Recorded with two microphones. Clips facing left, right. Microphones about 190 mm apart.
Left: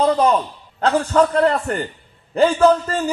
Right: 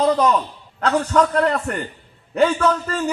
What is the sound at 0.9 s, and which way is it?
A man's voice, 35° left (ahead or behind).